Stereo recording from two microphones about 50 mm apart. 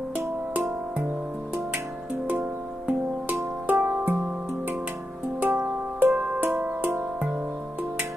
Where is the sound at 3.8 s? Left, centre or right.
Right.